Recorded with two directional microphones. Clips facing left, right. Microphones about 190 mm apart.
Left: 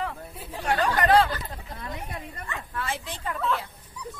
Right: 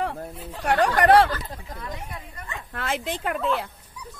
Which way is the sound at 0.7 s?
80° right.